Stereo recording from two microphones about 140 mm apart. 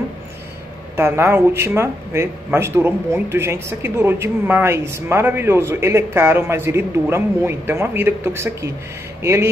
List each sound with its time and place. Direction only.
0.9 s speech: 15° right (ahead or behind)